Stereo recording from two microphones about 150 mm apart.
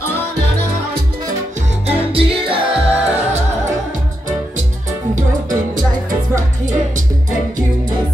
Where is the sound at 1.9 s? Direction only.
35° right (ahead or behind).